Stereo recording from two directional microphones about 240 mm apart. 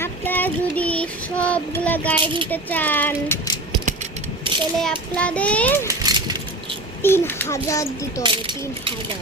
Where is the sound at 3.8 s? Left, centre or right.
Right.